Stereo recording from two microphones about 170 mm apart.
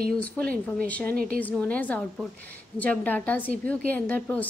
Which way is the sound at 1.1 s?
55° right (ahead or behind).